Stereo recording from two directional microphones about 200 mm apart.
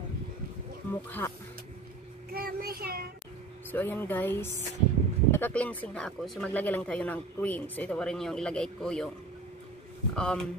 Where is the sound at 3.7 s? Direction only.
10° left (ahead or behind).